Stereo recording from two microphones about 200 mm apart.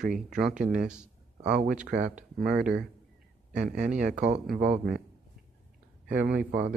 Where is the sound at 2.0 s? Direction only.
40° right (ahead or behind).